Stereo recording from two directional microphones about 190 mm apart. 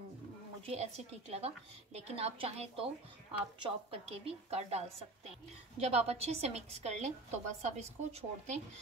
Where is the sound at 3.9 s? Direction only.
30° right (ahead or behind).